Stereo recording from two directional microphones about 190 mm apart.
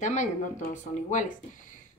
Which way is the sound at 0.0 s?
40° left (ahead or behind).